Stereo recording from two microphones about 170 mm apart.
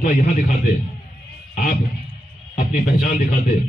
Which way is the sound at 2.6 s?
50° left (ahead or behind).